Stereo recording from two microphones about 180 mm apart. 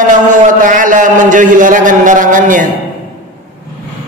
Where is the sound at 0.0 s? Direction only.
45° right (ahead or behind).